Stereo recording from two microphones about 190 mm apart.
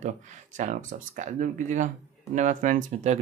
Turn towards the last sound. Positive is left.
turn(degrees=-40)  # may be behind; listen again after turning